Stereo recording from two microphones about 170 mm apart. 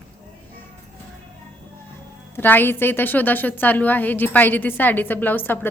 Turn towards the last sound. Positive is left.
turn(degrees=10)  # may be behind; listen again after turning